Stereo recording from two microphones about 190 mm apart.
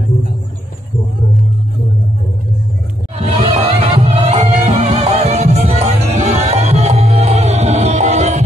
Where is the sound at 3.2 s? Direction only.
35° right (ahead or behind).